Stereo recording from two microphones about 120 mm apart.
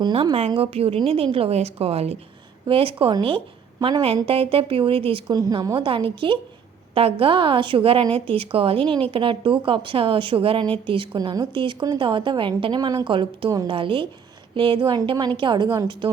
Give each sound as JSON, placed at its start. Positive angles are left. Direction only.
{"t": 0.0, "sound": "a woman's voice", "side_deg": -50}
{"t": 4.0, "sound": "a woman's voice", "side_deg": -50}
{"t": 5.3, "sound": "a woman's voice", "side_deg": -35}
{"t": 5.7, "sound": "a woman's voice", "side_deg": -45}
{"t": 13.1, "sound": "a woman's voice", "side_deg": -45}